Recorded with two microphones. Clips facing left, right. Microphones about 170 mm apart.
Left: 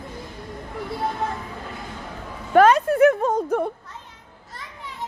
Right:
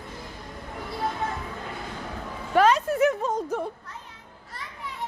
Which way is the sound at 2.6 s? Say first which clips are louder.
Left 5 dB; 50° left (ahead or behind).